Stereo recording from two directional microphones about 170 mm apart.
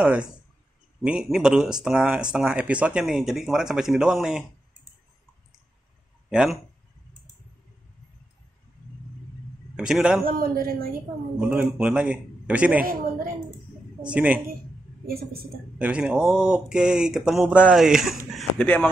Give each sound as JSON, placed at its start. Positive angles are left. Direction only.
{"t": 0.0, "sound": "a man's voice", "side_deg": -10}
{"t": 6.3, "sound": "speech", "side_deg": -5}
{"t": 9.8, "sound": "speech", "side_deg": -5}
{"t": 10.2, "sound": "a man's voice", "side_deg": -60}
{"t": 11.3, "sound": "a man's voice", "side_deg": -10}
{"t": 12.8, "sound": "a man's voice", "side_deg": -55}
{"t": 14.1, "sound": "a man's voice", "side_deg": -10}
{"t": 15.0, "sound": "a man's voice", "side_deg": -60}
{"t": 15.8, "sound": "speech", "side_deg": -5}
{"t": 18.3, "sound": "a sound", "side_deg": 5}